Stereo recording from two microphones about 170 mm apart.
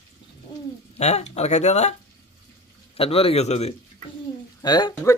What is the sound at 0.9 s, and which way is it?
Speech, 40° left (ahead or behind).